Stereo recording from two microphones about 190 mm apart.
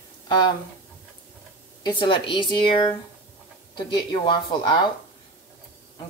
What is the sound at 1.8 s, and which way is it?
Speech, 25° left (ahead or behind).